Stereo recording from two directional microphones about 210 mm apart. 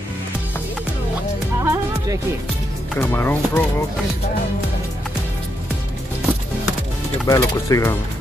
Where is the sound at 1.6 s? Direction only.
15° right (ahead or behind).